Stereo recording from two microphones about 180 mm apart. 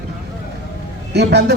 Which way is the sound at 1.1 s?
70° right (ahead or behind).